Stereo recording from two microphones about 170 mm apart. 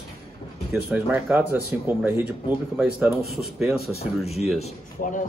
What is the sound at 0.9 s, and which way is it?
A man's voice, 10° right (ahead or behind).